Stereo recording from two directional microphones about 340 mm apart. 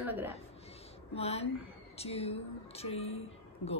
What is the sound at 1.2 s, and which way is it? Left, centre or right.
A woman's voice, centre.